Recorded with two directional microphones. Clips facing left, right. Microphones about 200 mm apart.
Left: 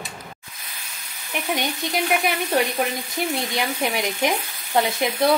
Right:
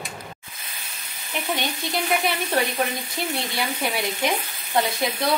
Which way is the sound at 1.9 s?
15° left (ahead or behind).